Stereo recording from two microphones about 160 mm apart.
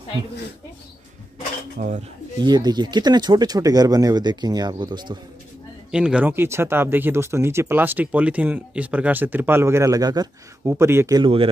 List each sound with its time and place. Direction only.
1.8 s speech: 65° right (ahead or behind)
2.4 s speech: 25° right (ahead or behind)
5.9 s speech: 5° right (ahead or behind)